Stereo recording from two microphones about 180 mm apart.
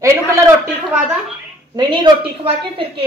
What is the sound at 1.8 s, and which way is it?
A woman's voice, 25° right (ahead or behind).